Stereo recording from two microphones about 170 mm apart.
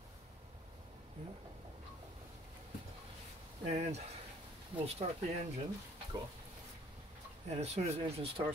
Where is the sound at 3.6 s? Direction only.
40° right (ahead or behind).